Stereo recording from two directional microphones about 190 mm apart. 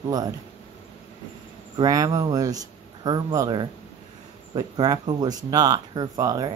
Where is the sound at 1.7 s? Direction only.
20° right (ahead or behind).